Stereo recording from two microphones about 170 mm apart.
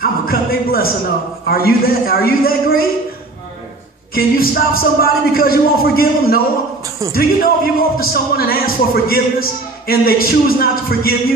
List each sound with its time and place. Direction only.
0.0 s a man's voice: 60° left (ahead or behind)
4.1 s a man's voice: 60° left (ahead or behind)